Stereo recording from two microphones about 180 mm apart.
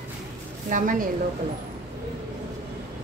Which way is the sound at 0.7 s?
45° right (ahead or behind).